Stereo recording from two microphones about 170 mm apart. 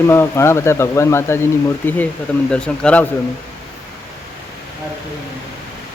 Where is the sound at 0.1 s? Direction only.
15° left (ahead or behind).